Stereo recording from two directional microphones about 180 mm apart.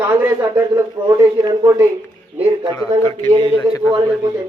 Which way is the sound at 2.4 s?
30° right (ahead or behind).